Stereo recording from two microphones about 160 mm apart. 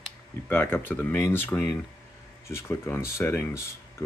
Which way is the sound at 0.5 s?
15° left (ahead or behind).